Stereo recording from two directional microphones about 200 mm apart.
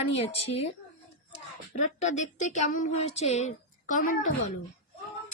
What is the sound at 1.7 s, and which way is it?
Speech, 35° left (ahead or behind).